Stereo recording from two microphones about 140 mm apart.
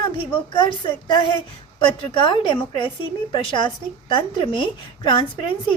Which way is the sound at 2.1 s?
35° left (ahead or behind).